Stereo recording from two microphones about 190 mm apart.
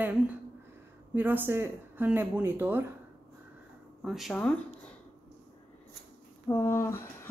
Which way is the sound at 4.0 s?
Centre (ahead or behind).